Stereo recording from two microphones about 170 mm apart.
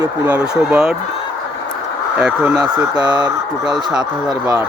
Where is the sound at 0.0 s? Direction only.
10° right (ahead or behind).